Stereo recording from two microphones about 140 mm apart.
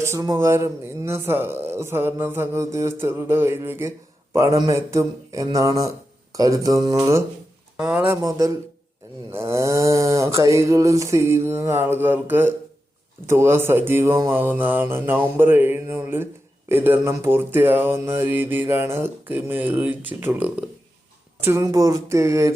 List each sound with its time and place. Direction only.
0.0 s speech: 20° right (ahead or behind)
7.8 s speech: 5° right (ahead or behind)
8.0 s speech: 20° right (ahead or behind)